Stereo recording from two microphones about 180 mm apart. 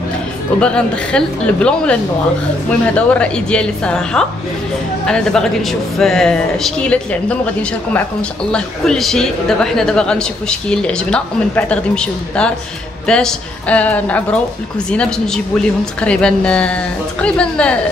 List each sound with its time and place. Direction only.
0.6 s a woman's voice: 5° left (ahead or behind)